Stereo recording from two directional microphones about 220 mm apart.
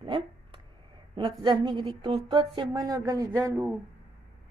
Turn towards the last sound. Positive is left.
turn(degrees=-15)  # may be behind; listen again after turning